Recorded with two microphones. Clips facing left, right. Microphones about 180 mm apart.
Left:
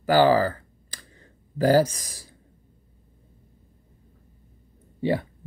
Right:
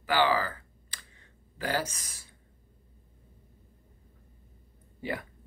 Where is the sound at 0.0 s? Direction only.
40° left (ahead or behind).